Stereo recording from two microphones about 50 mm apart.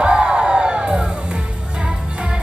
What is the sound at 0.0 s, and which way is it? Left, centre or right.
Crowd, centre.